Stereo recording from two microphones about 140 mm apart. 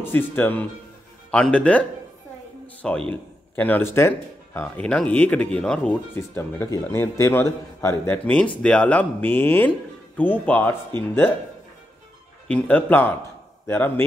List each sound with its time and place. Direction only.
0.0 s a man's voice: 15° left (ahead or behind)
6.1 s a man's voice: 20° left (ahead or behind)
12.4 s a man's voice: 10° left (ahead or behind)